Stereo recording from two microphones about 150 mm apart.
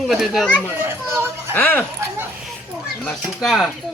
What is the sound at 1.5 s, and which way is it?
Speech, 10° left (ahead or behind).